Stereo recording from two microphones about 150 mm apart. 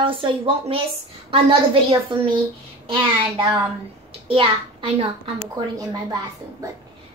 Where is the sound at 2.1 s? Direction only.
35° right (ahead or behind).